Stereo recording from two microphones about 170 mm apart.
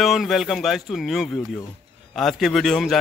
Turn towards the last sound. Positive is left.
turn(degrees=0)  # may be behind; listen again after turning